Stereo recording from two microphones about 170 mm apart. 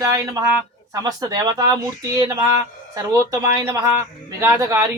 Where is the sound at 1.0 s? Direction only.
20° right (ahead or behind).